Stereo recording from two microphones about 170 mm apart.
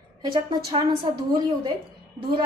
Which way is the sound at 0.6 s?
25° right (ahead or behind).